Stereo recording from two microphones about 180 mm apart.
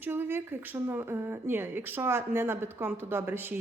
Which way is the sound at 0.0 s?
10° right (ahead or behind).